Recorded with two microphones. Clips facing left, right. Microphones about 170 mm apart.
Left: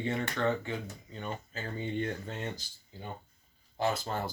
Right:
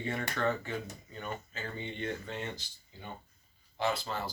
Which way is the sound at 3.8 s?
45° left (ahead or behind).